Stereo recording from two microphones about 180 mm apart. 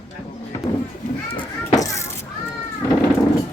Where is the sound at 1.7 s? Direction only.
15° left (ahead or behind).